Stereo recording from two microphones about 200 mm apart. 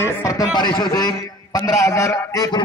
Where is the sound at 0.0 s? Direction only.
15° left (ahead or behind).